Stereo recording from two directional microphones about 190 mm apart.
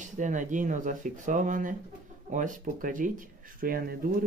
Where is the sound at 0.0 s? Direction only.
40° right (ahead or behind).